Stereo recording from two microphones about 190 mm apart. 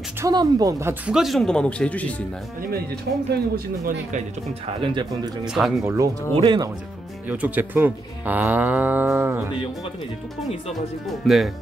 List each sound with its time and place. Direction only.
0.2 s speech: 20° right (ahead or behind)
1.1 s speech: centre (ahead or behind)
3.1 s speech: 60° right (ahead or behind)
4.7 s speech: 25° right (ahead or behind)
5.4 s speech: centre (ahead or behind)
5.9 s speech: 15° right (ahead or behind)
7.2 s speech: 10° right (ahead or behind)
10.7 s speech: centre (ahead or behind)